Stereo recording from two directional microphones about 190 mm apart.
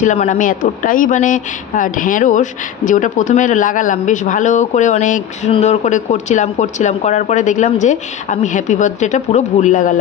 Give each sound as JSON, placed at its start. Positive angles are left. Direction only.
{"t": 0.0, "sound": "speech", "side_deg": 40}